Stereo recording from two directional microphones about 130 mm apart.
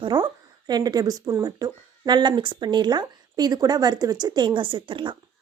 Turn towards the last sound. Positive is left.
turn(degrees=-40)  # may be behind; listen again after turning